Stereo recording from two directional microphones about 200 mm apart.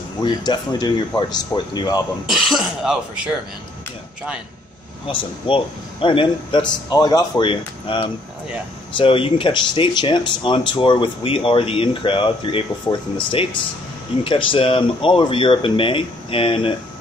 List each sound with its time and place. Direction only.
0.2 s speech: 20° left (ahead or behind)
2.2 s speech: centre (ahead or behind)
5.5 s speech: 25° left (ahead or behind)